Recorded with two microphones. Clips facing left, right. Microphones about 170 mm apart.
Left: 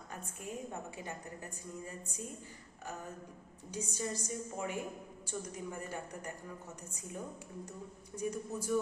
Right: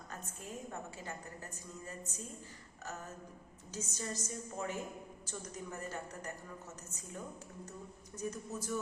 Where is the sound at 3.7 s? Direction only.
15° left (ahead or behind).